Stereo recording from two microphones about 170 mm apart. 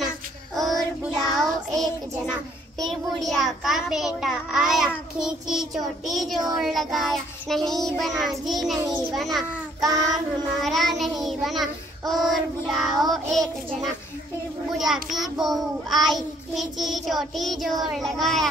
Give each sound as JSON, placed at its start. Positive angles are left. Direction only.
{"t": 0.6, "sound": "child singing", "side_deg": 0}
{"t": 1.1, "sound": "child singing", "side_deg": -25}
{"t": 2.8, "sound": "child singing", "side_deg": 0}
{"t": 9.1, "sound": "a child's voice", "side_deg": 0}
{"t": 9.8, "sound": "child singing", "side_deg": -20}
{"t": 10.6, "sound": "child singing", "side_deg": 0}
{"t": 14.8, "sound": "child singing", "side_deg": 0}